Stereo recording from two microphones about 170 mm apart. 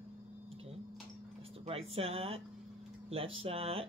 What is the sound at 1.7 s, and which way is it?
Speech, 35° right (ahead or behind).